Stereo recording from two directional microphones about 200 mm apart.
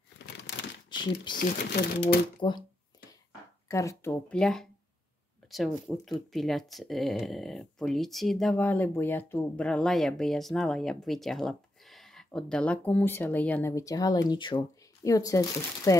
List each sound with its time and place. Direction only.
0.8 s a sound: 25° left (ahead or behind)
1.3 s speech: 45° left (ahead or behind)
2.4 s speech: 30° left (ahead or behind)
3.6 s speech: 15° left (ahead or behind)